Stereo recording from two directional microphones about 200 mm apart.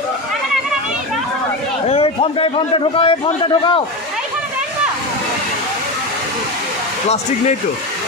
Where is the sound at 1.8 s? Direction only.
30° left (ahead or behind).